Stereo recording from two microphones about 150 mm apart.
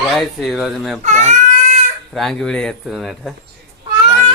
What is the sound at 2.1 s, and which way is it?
Speech, 5° left (ahead or behind).